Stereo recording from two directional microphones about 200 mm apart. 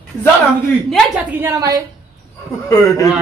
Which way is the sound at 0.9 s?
Centre (ahead or behind).